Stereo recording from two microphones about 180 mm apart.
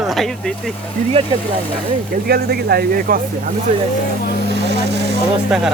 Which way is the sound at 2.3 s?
60° right (ahead or behind).